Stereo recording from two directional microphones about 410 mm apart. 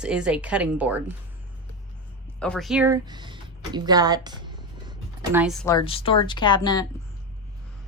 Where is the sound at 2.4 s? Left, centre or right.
Centre.